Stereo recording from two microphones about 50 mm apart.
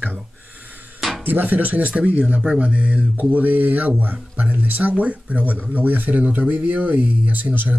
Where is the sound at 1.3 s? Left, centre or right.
Right.